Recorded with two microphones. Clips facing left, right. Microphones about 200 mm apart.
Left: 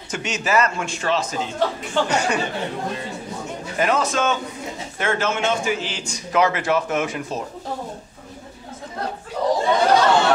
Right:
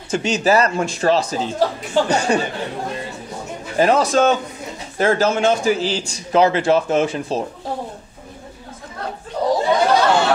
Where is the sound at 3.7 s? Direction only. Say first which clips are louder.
Right 6 dB; 35° right (ahead or behind).